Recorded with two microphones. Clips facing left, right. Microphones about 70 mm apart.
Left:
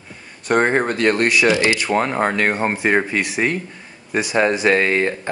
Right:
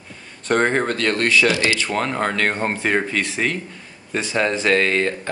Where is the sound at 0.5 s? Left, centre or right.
Centre.